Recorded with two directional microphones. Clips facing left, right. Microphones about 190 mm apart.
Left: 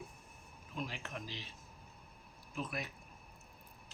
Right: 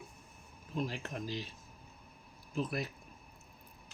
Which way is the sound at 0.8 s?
40° right (ahead or behind).